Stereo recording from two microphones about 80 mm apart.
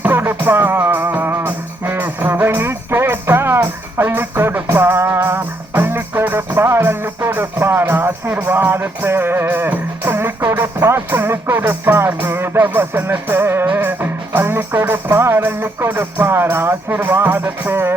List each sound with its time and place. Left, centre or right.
0.0 s music: right